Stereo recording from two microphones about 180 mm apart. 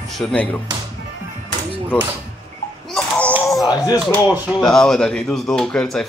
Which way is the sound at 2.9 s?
5° left (ahead or behind).